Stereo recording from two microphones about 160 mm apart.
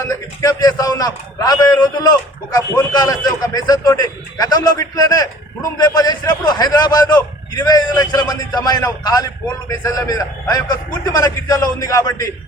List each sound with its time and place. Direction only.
0.1 s a man's voice: 25° left (ahead or behind)